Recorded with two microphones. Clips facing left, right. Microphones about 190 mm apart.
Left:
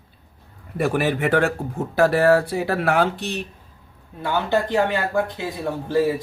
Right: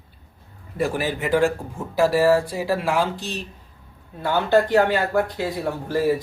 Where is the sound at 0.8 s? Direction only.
65° left (ahead or behind).